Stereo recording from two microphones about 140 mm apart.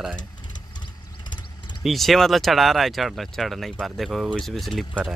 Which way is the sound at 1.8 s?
Centre (ahead or behind).